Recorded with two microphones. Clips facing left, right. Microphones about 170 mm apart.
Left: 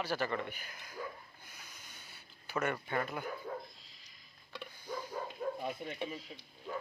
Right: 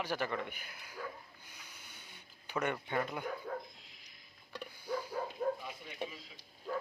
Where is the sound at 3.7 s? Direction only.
15° right (ahead or behind).